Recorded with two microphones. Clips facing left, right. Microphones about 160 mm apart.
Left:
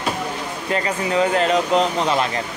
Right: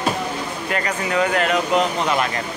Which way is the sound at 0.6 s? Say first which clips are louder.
Left 3 dB; 25° left (ahead or behind).